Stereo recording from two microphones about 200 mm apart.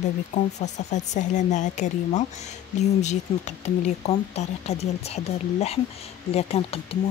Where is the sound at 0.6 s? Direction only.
35° left (ahead or behind).